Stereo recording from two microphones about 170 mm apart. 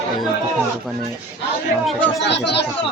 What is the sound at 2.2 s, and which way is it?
Speech, 85° left.